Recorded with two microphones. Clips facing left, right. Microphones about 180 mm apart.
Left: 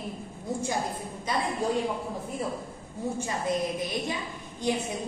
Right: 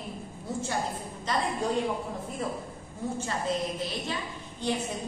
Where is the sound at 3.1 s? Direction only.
15° left (ahead or behind).